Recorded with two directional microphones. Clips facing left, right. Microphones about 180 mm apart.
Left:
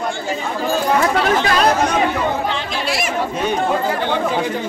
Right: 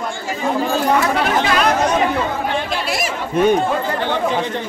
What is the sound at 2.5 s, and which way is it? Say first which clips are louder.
Chatter: right 1 dB; 55° right (ahead or behind).